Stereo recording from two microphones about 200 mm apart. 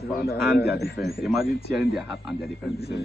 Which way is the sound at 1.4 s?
50° left (ahead or behind).